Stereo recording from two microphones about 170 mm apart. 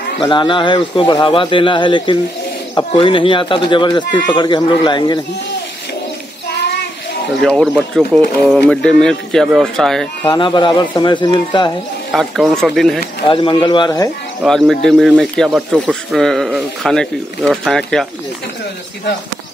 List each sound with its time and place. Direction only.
0.2 s speech: 30° left (ahead or behind)
7.4 s speech: 5° left (ahead or behind)
10.2 s speech: 25° left (ahead or behind)
12.1 s speech: centre (ahead or behind)
13.3 s speech: 30° left (ahead or behind)
14.4 s speech: centre (ahead or behind)